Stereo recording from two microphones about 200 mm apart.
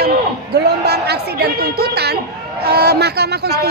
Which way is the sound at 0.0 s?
55° right (ahead or behind).